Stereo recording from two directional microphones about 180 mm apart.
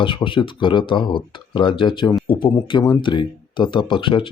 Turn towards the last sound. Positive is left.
turn(degrees=25)  # may be behind; listen again after turning